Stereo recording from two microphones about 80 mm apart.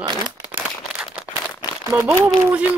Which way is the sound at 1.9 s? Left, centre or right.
Right.